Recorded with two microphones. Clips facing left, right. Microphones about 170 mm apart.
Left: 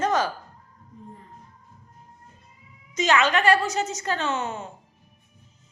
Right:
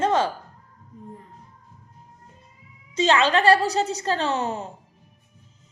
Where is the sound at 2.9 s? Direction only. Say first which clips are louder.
Right 2 dB; 30° right (ahead or behind).